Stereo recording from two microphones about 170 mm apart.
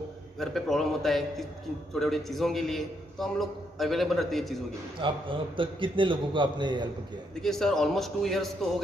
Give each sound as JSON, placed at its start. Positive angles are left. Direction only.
{"t": 0.4, "sound": "a man's voice", "side_deg": 0}
{"t": 5.0, "sound": "a man's voice", "side_deg": -30}
{"t": 7.4, "sound": "a man's voice", "side_deg": 5}